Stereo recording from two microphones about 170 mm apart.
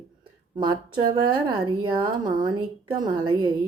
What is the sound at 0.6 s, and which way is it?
Speech, 25° right (ahead or behind).